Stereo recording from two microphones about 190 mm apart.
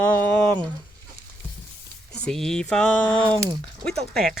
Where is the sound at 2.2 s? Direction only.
Centre (ahead or behind).